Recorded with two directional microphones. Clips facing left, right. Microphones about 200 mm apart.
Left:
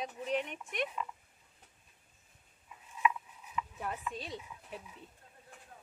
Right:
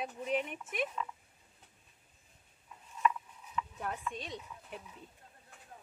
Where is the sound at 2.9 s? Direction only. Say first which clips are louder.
Even; 5° left (ahead or behind).